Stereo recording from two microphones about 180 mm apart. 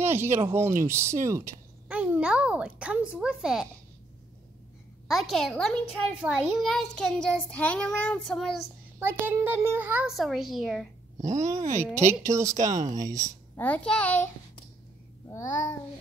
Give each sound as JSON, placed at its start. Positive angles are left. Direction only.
{"t": 0.0, "sound": "a child's voice", "side_deg": -15}
{"t": 5.0, "sound": "a child's voice", "side_deg": 0}
{"t": 9.0, "sound": "a child's voice", "side_deg": -10}
{"t": 11.1, "sound": "speech", "side_deg": -40}
{"t": 12.1, "sound": "a child's voice", "side_deg": -15}
{"t": 13.6, "sound": "a child's voice", "side_deg": 10}
{"t": 15.2, "sound": "babbling", "side_deg": 20}